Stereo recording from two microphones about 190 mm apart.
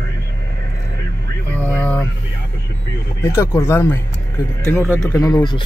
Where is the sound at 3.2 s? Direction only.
15° left (ahead or behind).